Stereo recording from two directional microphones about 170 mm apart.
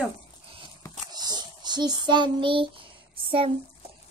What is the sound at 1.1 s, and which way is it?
Child singing, 25° right (ahead or behind).